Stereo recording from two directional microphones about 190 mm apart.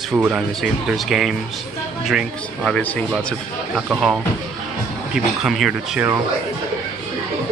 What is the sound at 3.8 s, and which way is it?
Speech, 5° right (ahead or behind).